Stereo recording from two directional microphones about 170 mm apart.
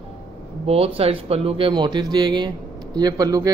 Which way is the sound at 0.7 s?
35° right (ahead or behind).